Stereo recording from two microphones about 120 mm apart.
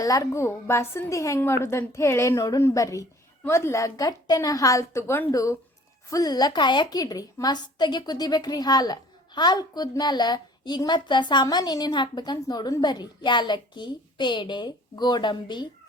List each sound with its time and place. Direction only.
0.0 s a woman's voice: 30° left (ahead or behind)